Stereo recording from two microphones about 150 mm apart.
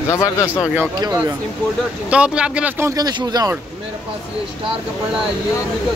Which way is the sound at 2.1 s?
5° right (ahead or behind).